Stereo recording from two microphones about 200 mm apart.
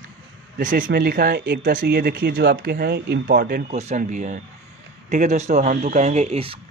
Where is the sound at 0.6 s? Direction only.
40° right (ahead or behind).